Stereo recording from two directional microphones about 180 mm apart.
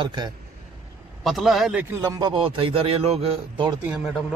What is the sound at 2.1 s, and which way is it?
A man's voice, 25° right (ahead or behind).